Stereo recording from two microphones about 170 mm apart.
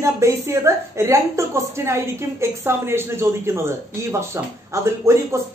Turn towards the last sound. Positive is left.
turn(degrees=-15)  # may be behind; listen again after turning